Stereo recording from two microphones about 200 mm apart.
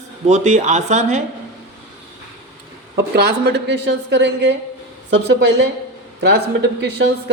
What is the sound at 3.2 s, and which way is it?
A woman's voice, 55° right (ahead or behind).